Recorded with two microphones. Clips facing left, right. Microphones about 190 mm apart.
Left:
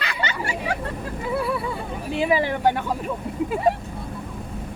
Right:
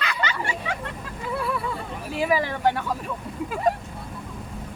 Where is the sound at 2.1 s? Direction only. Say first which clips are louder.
Left 2 dB; 25° left (ahead or behind).